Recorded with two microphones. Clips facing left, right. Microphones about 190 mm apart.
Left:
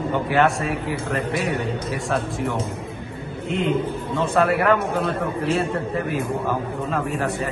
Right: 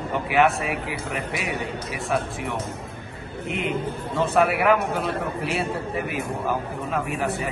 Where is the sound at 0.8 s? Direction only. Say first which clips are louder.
Left 5 dB; 30° left (ahead or behind).